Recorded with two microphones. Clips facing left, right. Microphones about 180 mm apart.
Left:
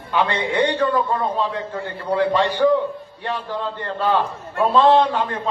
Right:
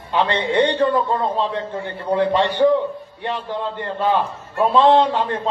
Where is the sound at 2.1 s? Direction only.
20° right (ahead or behind).